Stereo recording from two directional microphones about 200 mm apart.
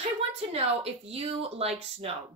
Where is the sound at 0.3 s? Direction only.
30° right (ahead or behind).